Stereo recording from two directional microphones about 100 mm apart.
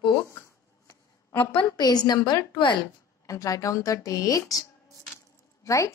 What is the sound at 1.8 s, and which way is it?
Speech, 45° left (ahead or behind).